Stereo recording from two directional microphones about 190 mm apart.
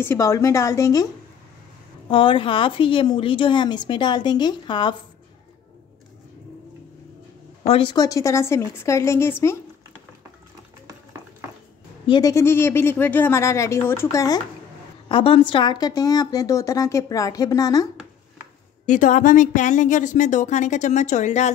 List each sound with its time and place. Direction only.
0.0 s speech: 15° left (ahead or behind)
2.0 s a woman's voice: 25° left (ahead or behind)
7.6 s speech: 30° left (ahead or behind); by 9.6 s 15° left (ahead or behind)
12.1 s a woman's voice: 20° left (ahead or behind)
18.9 s a woman's voice: 40° left (ahead or behind)